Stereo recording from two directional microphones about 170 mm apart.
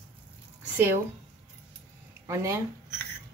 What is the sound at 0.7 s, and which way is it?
Speech, 10° right (ahead or behind).